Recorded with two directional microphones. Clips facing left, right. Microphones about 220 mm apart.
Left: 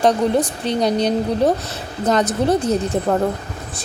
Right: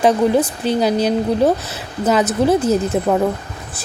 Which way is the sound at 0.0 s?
5° right (ahead or behind).